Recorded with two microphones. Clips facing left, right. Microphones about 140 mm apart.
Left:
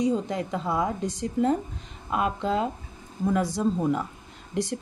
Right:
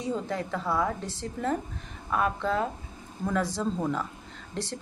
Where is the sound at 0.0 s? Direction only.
15° left (ahead or behind).